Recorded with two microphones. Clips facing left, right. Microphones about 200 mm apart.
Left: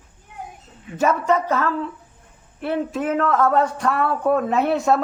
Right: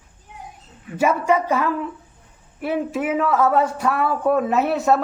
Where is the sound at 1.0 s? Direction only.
10° right (ahead or behind).